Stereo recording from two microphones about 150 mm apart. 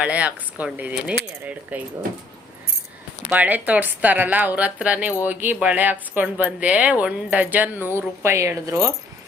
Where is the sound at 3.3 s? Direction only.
10° right (ahead or behind).